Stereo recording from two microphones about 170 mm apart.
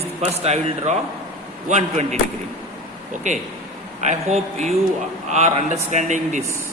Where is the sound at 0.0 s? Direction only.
40° right (ahead or behind).